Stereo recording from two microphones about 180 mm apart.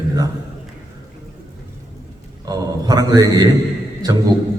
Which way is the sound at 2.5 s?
20° right (ahead or behind).